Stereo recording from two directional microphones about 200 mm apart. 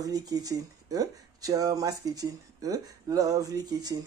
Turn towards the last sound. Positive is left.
turn(degrees=-20)  # may be behind; listen again after turning